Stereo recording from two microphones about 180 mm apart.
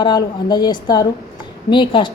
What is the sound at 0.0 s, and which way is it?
A woman's voice, 25° left (ahead or behind).